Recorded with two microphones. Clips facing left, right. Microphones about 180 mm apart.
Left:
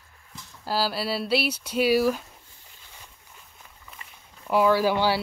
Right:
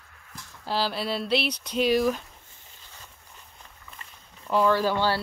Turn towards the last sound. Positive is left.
turn(degrees=10)  # may be behind; listen again after turning